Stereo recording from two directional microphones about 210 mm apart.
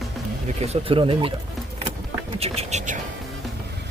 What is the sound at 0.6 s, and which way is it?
Speech, 25° right (ahead or behind).